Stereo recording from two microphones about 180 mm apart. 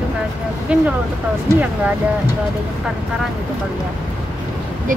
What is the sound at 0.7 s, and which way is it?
Speech, 5° right (ahead or behind).